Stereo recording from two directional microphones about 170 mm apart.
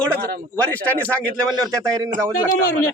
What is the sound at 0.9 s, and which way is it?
Speech, 10° left (ahead or behind).